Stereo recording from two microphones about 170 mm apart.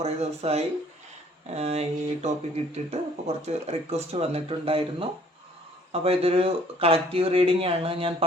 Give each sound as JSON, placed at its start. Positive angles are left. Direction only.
{"t": 0.0, "sound": "speech", "side_deg": -40}